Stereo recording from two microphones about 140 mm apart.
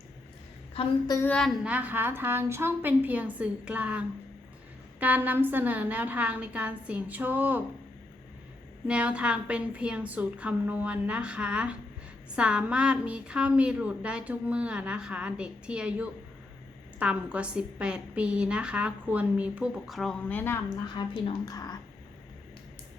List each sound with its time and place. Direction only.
1.2 s a woman's voice: 5° left (ahead or behind)
1.6 s a woman's voice: 10° right (ahead or behind)
8.9 s a woman's voice: 10° right (ahead or behind)
20.2 s a woman's voice: 15° left (ahead or behind)
20.8 s a woman's voice: 35° left (ahead or behind)
21.5 s speech: 25° left (ahead or behind)